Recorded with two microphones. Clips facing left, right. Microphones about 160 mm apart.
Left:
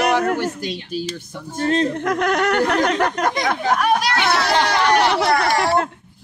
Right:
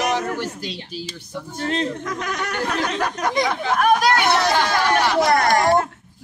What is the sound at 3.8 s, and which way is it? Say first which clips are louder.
Speech: right 7 dB; 45° right (ahead or behind).